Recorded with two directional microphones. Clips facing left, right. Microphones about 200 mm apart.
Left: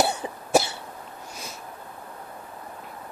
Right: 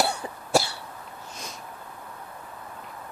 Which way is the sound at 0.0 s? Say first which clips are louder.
Left 2 dB; 20° left (ahead or behind).